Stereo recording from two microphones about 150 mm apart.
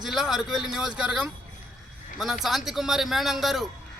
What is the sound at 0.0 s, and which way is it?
A man's voice, 5° right (ahead or behind).